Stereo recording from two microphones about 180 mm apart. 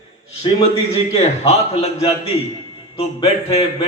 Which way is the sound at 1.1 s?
35° left (ahead or behind).